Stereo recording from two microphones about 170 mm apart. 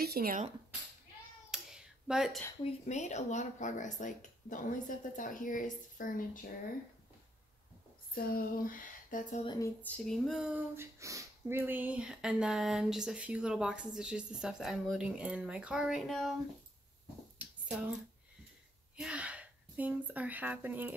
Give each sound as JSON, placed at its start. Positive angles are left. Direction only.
{"t": 0.0, "sound": "speech", "side_deg": -65}
{"t": 1.5, "sound": "a sound", "side_deg": -5}
{"t": 2.6, "sound": "speech", "side_deg": 40}
{"t": 8.1, "sound": "a sound", "side_deg": 60}
{"t": 9.6, "sound": "speech", "side_deg": 10}
{"t": 18.9, "sound": "speech", "side_deg": -5}